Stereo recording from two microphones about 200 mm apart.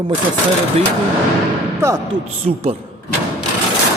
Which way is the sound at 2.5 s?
35° right (ahead or behind).